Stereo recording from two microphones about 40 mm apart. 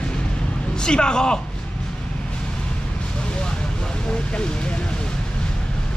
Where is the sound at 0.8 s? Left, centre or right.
Left.